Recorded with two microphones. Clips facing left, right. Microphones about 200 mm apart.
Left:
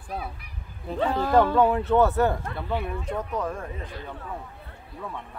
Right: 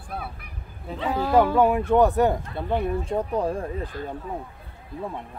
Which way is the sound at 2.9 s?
30° right (ahead or behind).